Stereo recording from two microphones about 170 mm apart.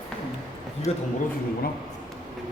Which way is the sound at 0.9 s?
40° left (ahead or behind).